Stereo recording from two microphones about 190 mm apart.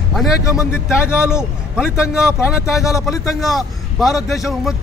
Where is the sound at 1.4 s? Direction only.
5° right (ahead or behind).